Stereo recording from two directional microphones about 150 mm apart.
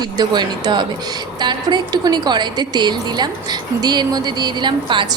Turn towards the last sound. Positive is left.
turn(degrees=-30)  # may be behind; listen again after turning